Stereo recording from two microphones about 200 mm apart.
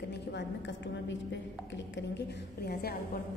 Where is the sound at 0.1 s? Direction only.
60° left (ahead or behind).